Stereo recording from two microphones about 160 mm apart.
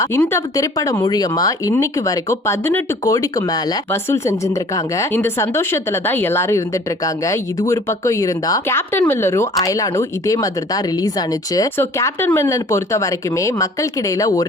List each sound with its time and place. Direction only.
0.0 s speech: 15° left (ahead or behind)